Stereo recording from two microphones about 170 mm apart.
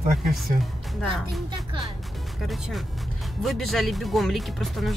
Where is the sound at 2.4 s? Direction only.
Centre (ahead or behind).